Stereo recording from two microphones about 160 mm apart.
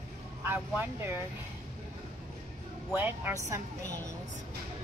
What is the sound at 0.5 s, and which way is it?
Speech, 15° right (ahead or behind).